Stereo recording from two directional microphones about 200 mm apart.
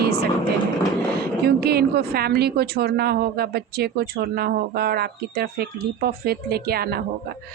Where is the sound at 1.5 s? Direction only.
50° right (ahead or behind).